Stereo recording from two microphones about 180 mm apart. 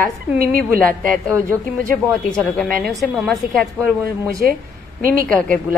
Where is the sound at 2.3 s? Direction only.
5° left (ahead or behind).